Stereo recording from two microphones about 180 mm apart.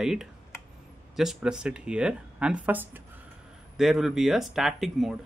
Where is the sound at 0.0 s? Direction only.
5° right (ahead or behind).